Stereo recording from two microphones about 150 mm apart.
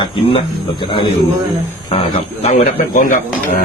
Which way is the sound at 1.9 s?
45° left (ahead or behind).